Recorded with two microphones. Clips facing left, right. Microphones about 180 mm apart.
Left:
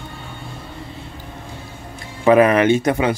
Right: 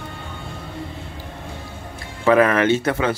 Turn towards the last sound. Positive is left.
turn(degrees=15)  # may be behind; listen again after turning